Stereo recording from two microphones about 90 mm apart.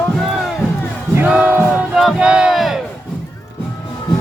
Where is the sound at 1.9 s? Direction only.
5° right (ahead or behind).